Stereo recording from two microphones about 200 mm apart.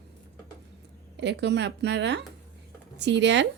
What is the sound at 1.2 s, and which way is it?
A woman's voice, 60° right (ahead or behind).